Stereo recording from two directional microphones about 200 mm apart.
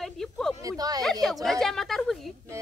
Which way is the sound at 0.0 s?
Centre (ahead or behind).